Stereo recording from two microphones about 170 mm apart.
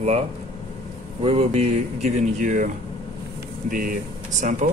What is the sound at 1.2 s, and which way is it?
Speech, 35° right (ahead or behind).